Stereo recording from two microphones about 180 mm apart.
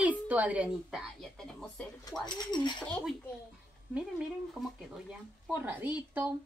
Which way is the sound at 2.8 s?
Centre (ahead or behind).